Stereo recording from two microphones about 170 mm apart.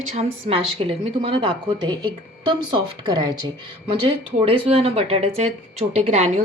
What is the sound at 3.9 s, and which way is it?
Speech, 30° right (ahead or behind).